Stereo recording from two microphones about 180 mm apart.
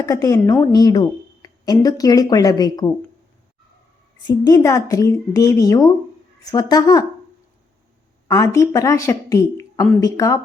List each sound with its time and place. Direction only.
0.0 s speech: 20° left (ahead or behind)
4.3 s speech: 20° left (ahead or behind)
8.3 s a woman's voice: 20° left (ahead or behind)